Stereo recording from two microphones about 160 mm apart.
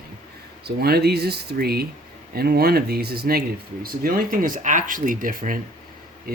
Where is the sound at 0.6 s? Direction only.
80° right.